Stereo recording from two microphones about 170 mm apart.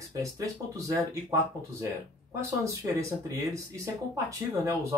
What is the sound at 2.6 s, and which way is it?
Speech, 15° right (ahead or behind).